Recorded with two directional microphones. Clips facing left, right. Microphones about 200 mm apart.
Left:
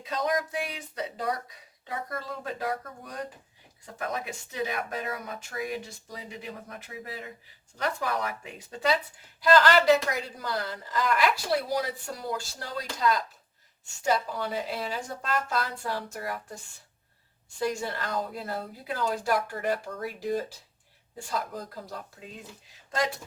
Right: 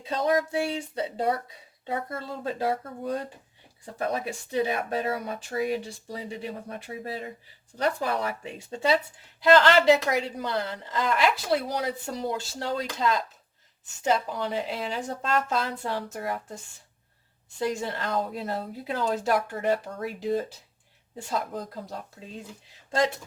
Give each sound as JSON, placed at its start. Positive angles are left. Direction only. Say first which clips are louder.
{"t": 0.0, "sound": "speech", "louder": "right 4 dB", "side_deg": -30}
{"t": 17.6, "sound": "speech", "louder": "right 1 dB", "side_deg": -20}